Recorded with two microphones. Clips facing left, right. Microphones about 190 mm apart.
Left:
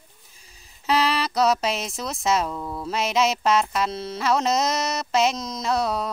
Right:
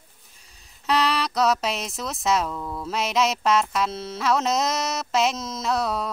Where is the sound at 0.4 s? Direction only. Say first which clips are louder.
Left 1 dB; centre (ahead or behind).